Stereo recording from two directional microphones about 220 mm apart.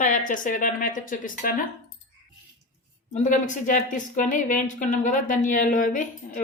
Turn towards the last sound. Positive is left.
turn(degrees=35)  # may be behind; listen again after turning